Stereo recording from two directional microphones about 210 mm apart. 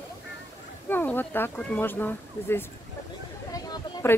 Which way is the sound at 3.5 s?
15° left (ahead or behind).